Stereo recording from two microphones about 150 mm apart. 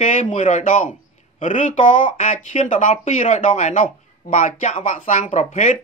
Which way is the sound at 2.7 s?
60° left (ahead or behind).